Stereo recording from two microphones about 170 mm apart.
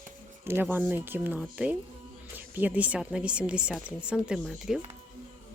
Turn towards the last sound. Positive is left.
turn(degrees=0)  # may be behind; listen again after turning